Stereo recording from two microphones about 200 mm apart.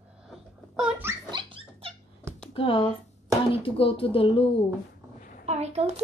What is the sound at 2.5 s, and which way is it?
Speech, 25° left (ahead or behind).